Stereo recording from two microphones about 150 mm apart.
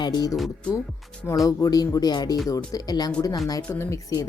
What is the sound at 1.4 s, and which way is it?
Speech, 25° left (ahead or behind).